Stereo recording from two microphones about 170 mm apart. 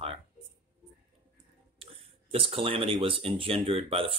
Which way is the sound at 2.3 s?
30° right (ahead or behind).